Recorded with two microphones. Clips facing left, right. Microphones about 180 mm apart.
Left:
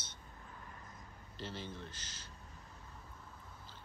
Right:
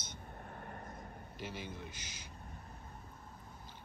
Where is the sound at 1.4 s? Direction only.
15° right (ahead or behind).